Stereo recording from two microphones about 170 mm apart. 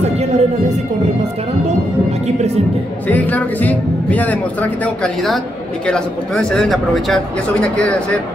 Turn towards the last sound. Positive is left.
turn(degrees=5)  # may be behind; listen again after turning